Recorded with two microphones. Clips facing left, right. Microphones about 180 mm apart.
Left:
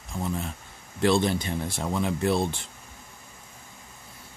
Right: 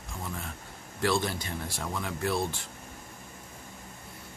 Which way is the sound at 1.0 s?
20° left (ahead or behind).